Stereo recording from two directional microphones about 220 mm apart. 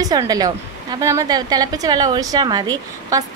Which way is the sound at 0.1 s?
15° right (ahead or behind).